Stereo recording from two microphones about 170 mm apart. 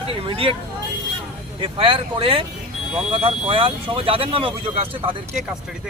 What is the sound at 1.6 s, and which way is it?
Speech, 30° right (ahead or behind).